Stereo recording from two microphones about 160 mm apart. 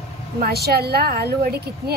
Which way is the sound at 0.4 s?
80° right.